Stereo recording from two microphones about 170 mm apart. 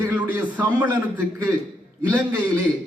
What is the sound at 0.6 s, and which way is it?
Speech, 10° right (ahead or behind).